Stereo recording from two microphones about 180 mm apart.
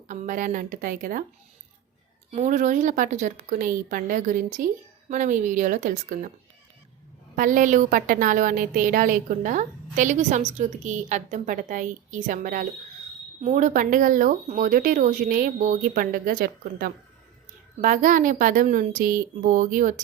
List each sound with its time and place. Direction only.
0.1 s a woman's voice: 45° right (ahead or behind)
2.3 s a woman's voice: 45° right (ahead or behind)
7.3 s a woman's voice: 50° right (ahead or behind)